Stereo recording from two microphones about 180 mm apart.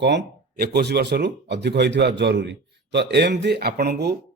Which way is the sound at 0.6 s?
65° right (ahead or behind).